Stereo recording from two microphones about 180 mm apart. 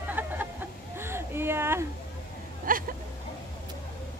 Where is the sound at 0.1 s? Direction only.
10° right (ahead or behind).